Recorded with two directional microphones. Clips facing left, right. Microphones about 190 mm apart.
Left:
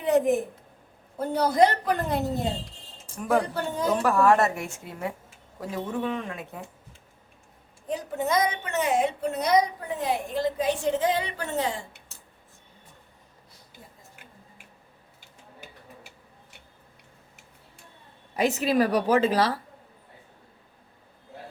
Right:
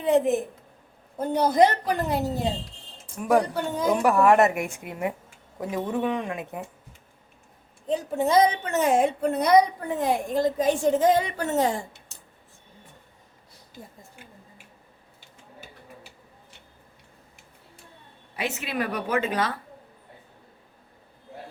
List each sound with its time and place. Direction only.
0.0 s a woman's voice: 25° right (ahead or behind)
3.2 s a woman's voice: 10° right (ahead or behind)
7.9 s a woman's voice: 25° right (ahead or behind)
8.7 s a woman's voice: 45° right (ahead or behind)
18.3 s a woman's voice: 40° left (ahead or behind)